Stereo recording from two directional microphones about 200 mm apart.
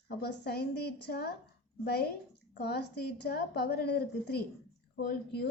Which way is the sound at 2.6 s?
55° left (ahead or behind).